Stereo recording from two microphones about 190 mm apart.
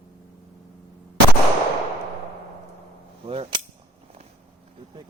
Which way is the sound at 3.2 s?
30° right (ahead or behind).